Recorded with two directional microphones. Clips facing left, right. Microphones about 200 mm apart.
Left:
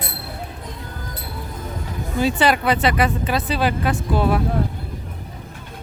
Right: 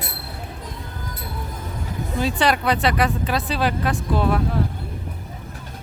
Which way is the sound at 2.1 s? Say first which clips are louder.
Left 3 dB; centre (ahead or behind).